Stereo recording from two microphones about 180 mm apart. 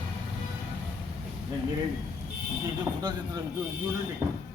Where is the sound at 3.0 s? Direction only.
20° right (ahead or behind).